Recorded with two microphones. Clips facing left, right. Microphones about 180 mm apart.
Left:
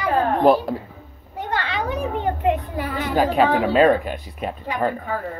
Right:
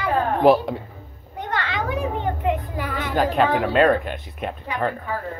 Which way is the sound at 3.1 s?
5° left (ahead or behind).